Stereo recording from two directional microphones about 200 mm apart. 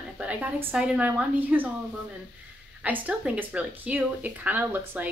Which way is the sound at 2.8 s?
5° right (ahead or behind).